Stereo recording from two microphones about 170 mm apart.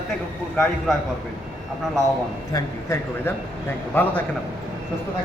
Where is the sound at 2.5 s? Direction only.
15° left (ahead or behind).